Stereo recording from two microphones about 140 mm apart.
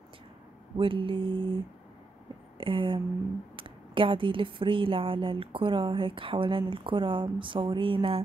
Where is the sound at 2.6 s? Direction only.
40° right (ahead or behind).